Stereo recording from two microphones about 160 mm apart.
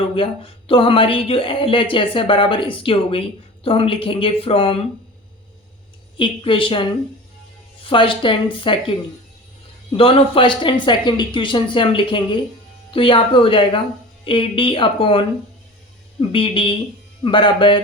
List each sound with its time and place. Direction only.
0.1 s speech: 35° left (ahead or behind)
6.1 s speech: 30° left (ahead or behind)
7.9 s speech: 35° left (ahead or behind)
10.0 s speech: 35° left (ahead or behind)
16.3 s speech: 30° left (ahead or behind)